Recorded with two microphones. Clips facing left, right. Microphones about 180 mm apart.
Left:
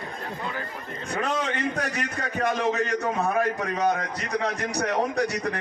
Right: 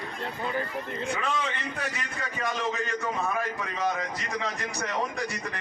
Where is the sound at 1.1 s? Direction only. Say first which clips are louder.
Left 9 dB; 45° left (ahead or behind).